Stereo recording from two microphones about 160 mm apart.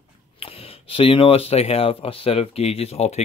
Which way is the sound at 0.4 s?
35° left (ahead or behind).